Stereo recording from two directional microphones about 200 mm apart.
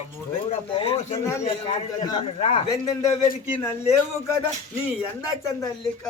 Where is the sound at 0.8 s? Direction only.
25° left (ahead or behind).